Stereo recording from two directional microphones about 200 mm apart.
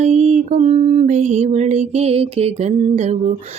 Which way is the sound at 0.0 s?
35° right (ahead or behind).